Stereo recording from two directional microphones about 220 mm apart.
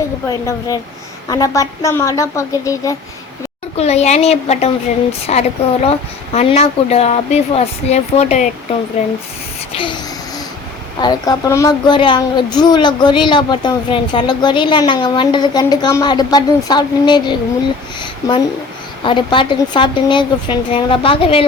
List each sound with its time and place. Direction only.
0.3 s a woman's voice: 15° left (ahead or behind)
3.8 s speech: 30° left (ahead or behind)
11.0 s speech: 20° left (ahead or behind)
19.0 s speech: 20° left (ahead or behind)